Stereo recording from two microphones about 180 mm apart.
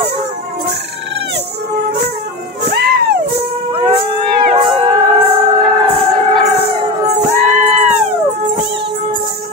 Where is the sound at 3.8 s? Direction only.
30° right (ahead or behind).